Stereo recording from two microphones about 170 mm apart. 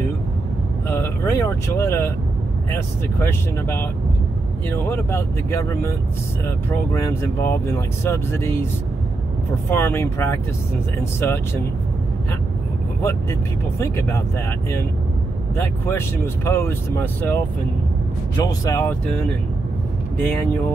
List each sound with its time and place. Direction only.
0.8 s speech: 15° left (ahead or behind)
9.7 s speech: 15° left (ahead or behind)
13.0 s speech: 15° left (ahead or behind)
15.5 s speech: 15° left (ahead or behind)
18.4 s speech: 20° left (ahead or behind)
20.2 s speech: 10° left (ahead or behind)